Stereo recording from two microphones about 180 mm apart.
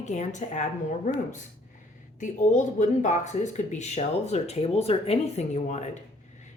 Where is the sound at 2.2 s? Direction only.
40° left (ahead or behind).